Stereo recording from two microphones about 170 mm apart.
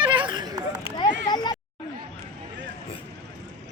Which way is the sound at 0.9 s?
30° left (ahead or behind).